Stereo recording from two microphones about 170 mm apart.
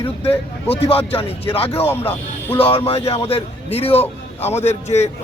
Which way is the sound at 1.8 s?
15° left (ahead or behind).